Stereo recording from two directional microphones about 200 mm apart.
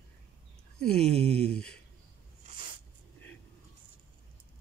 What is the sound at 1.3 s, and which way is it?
Speech, 5° left (ahead or behind).